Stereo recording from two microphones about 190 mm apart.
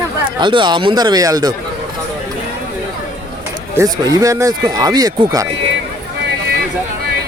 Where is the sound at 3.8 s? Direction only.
20° right (ahead or behind).